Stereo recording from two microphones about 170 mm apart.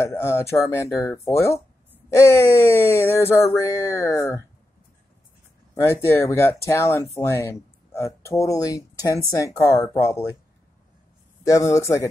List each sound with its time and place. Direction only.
0.0 s speech: 15° left (ahead or behind)
5.8 s speech: 15° left (ahead or behind)
11.4 s speech: 20° left (ahead or behind)